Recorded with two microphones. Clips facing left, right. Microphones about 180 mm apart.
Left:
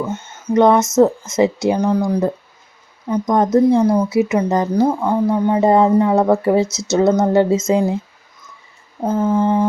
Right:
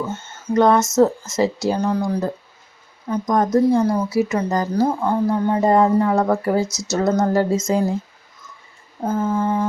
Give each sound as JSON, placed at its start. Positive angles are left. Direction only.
{"t": 0.0, "sound": "a sound", "side_deg": 15}
{"t": 0.5, "sound": "speech", "side_deg": 20}
{"t": 0.8, "sound": "speech", "side_deg": 0}
{"t": 1.6, "sound": "speech", "side_deg": 15}
{"t": 6.7, "sound": "speech", "side_deg": 0}
{"t": 6.9, "sound": "speech", "side_deg": 20}
{"t": 9.0, "sound": "speech", "side_deg": 20}